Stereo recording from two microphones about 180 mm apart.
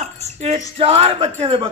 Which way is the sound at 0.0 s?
35° right (ahead or behind).